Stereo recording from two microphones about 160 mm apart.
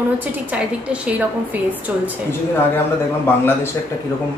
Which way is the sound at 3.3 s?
15° left (ahead or behind).